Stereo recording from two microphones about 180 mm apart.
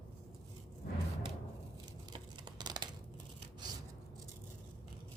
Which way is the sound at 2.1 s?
25° right (ahead or behind).